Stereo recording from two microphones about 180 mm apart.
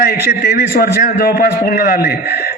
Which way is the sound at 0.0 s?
55° left (ahead or behind).